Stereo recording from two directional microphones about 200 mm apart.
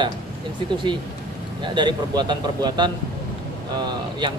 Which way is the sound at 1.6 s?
20° right (ahead or behind).